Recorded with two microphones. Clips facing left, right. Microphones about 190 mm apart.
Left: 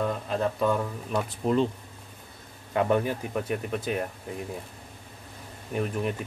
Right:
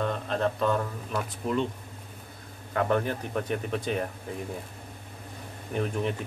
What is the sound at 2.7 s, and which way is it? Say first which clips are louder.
Speech: left 2 dB; 15° left (ahead or behind).